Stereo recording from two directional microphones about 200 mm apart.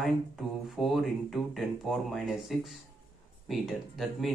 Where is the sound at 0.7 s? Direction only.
Centre (ahead or behind).